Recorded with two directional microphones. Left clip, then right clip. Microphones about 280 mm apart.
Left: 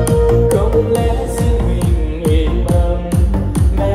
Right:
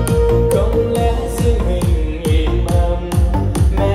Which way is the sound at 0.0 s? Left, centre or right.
Centre.